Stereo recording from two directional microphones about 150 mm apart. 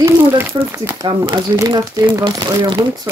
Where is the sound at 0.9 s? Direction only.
30° right (ahead or behind).